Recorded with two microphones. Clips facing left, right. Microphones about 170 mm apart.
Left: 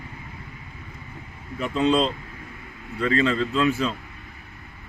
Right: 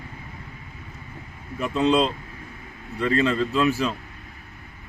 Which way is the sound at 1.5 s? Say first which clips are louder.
Right 1 dB; 5° right (ahead or behind).